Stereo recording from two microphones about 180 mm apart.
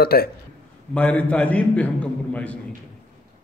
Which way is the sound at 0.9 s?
10° left (ahead or behind).